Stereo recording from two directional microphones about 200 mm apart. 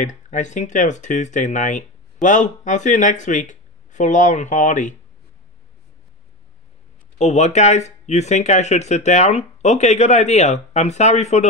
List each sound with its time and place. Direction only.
0.0 s speech: 35° left (ahead or behind)
7.2 s speech: 35° left (ahead or behind)